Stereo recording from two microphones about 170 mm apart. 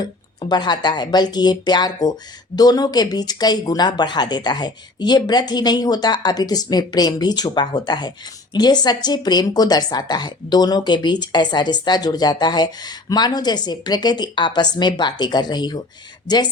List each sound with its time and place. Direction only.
0.0 s a woman's voice: 25° left (ahead or behind)